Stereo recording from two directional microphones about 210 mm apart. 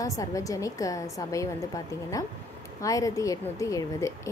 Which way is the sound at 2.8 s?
15° left (ahead or behind).